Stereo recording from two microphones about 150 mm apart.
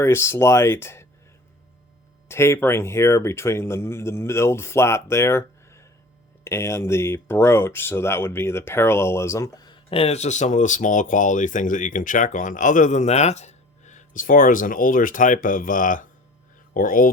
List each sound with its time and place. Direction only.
0.0 s speech: 15° left (ahead or behind)
2.2 s speech: 15° left (ahead or behind); by 17.1 s 70° left (ahead or behind)